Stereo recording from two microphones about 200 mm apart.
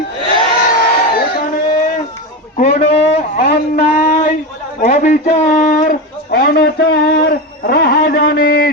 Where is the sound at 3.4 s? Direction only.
50° left (ahead or behind).